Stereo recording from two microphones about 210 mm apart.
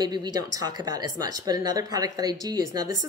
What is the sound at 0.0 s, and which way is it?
A woman's voice, 20° right (ahead or behind).